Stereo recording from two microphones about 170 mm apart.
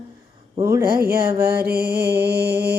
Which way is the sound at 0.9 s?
60° right (ahead or behind).